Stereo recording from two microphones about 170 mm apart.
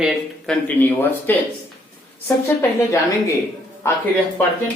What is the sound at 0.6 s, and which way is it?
Speech, 10° left (ahead or behind).